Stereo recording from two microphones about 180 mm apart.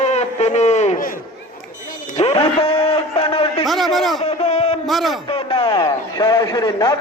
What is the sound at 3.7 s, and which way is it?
Speech, centre (ahead or behind).